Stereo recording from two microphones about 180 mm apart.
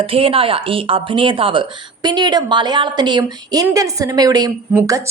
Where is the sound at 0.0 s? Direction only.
30° right (ahead or behind).